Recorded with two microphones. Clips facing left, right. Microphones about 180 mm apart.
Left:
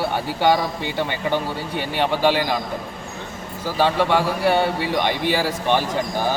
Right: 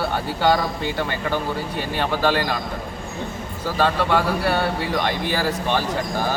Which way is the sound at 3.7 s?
10° left (ahead or behind).